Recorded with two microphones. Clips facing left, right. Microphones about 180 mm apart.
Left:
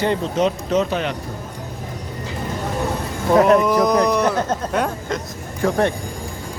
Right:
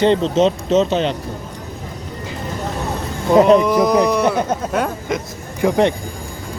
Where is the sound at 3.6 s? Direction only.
Centre (ahead or behind).